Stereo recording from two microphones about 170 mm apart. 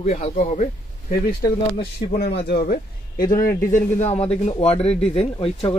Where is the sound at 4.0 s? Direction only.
35° left (ahead or behind).